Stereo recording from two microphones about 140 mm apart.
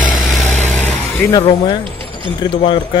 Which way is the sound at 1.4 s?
35° left (ahead or behind).